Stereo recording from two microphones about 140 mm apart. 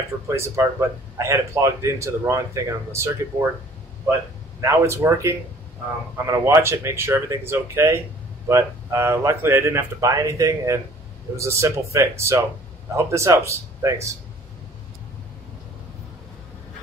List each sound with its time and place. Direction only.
0.3 s speech: 20° right (ahead or behind)
4.6 s speech: 20° right (ahead or behind)